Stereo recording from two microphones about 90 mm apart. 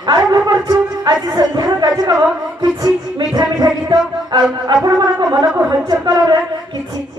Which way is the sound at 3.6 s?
50° right (ahead or behind).